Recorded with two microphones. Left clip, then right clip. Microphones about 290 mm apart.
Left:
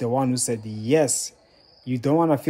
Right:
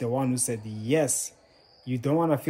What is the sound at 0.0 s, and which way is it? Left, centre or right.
Speech, centre.